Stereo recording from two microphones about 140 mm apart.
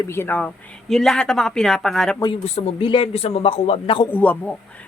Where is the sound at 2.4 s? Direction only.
45° left (ahead or behind).